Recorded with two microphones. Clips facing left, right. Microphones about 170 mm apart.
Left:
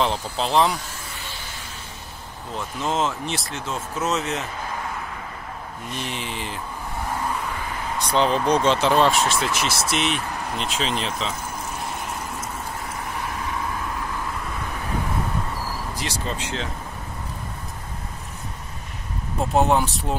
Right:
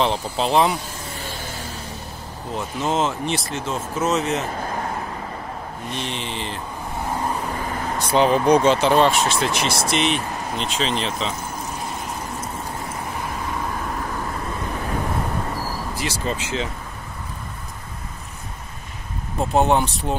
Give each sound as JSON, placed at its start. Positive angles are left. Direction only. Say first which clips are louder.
{"t": 0.0, "sound": "speech", "louder": "right 2 dB", "side_deg": 0}
{"t": 2.5, "sound": "speech", "louder": "right 3 dB", "side_deg": 0}
{"t": 5.9, "sound": "speech", "louder": "right 1 dB", "side_deg": 10}
{"t": 7.4, "sound": "vehicle", "louder": "right 3 dB", "side_deg": -40}
{"t": 8.1, "sound": "speech", "louder": "right 4 dB", "side_deg": -10}
{"t": 8.7, "sound": "speech", "louder": "right 2 dB", "side_deg": 0}
{"t": 16.0, "sound": "speech", "louder": "right 5 dB", "side_deg": -5}
{"t": 19.5, "sound": "speech", "louder": "right 1 dB", "side_deg": 0}